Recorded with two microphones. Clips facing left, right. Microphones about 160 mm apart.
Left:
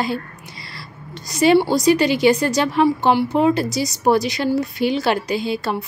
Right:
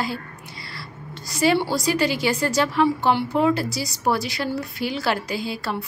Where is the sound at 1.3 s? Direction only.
20° left (ahead or behind).